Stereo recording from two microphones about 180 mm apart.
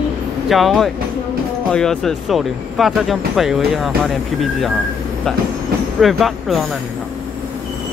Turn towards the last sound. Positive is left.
turn(degrees=0)  # may be behind; listen again after turning